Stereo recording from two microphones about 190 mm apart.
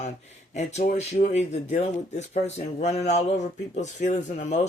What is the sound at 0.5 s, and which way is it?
Speech, 40° left (ahead or behind).